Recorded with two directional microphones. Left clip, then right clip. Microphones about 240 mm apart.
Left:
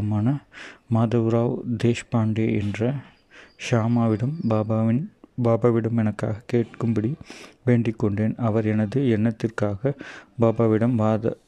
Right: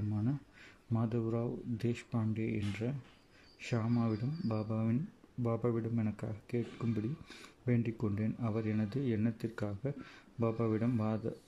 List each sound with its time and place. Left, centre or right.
0.1 s speech: left